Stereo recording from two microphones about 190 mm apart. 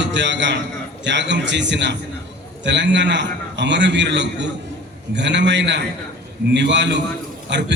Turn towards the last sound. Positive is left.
turn(degrees=-65)  # may be behind; listen again after turning